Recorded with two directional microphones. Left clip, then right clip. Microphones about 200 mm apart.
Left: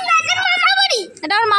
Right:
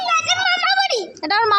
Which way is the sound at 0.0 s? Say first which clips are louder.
Left 2 dB; 10° left (ahead or behind).